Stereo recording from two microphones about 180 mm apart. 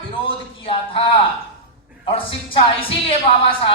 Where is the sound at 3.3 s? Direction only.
30° left (ahead or behind).